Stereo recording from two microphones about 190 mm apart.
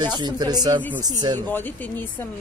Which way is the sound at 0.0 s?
25° right (ahead or behind).